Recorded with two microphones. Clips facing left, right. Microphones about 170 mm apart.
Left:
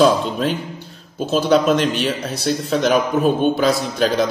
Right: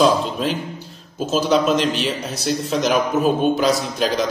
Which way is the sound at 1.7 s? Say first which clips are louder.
Left 2 dB; centre (ahead or behind).